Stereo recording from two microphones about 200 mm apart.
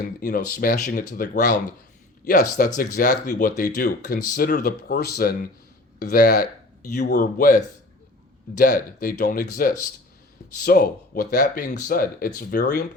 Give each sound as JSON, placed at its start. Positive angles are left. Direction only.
{"t": 0.0, "sound": "speech", "side_deg": 45}